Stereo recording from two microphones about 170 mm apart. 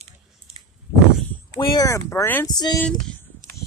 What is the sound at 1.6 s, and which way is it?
A woman's voice, 20° left (ahead or behind).